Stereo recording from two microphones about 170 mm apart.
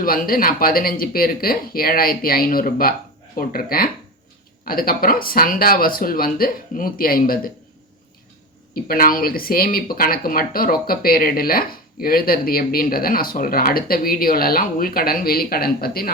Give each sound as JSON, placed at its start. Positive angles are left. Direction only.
{"t": 0.0, "sound": "speech", "side_deg": 60}
{"t": 8.7, "sound": "speech", "side_deg": 60}